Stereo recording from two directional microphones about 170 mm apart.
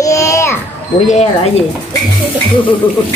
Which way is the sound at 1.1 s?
40° left (ahead or behind).